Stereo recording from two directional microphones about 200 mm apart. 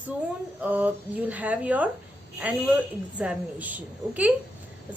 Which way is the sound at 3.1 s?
5° right (ahead or behind).